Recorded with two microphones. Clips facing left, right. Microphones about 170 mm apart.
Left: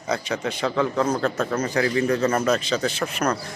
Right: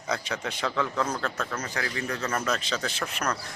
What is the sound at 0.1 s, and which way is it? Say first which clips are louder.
Speech: left 6 dB; centre (ahead or behind).